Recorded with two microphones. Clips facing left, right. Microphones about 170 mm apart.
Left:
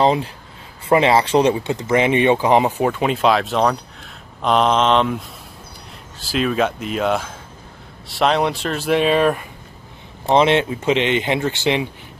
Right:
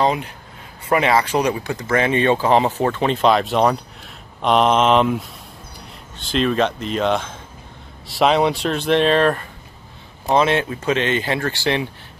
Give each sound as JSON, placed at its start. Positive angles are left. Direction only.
{"t": 0.0, "sound": "speech", "side_deg": 30}
{"t": 10.2, "sound": "speech", "side_deg": 20}